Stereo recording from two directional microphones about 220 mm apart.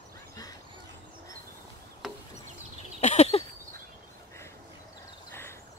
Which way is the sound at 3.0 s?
30° left (ahead or behind).